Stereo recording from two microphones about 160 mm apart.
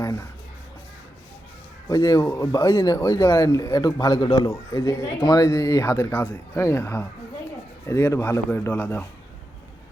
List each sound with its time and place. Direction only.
0.0 s speech: 20° left (ahead or behind)
1.9 s a man's voice: 20° left (ahead or behind)